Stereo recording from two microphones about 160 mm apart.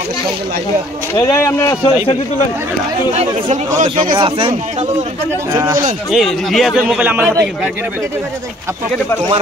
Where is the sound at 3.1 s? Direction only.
45° right (ahead or behind).